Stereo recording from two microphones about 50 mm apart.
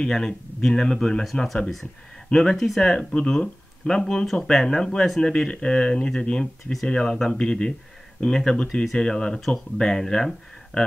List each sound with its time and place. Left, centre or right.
0.0 s speech: centre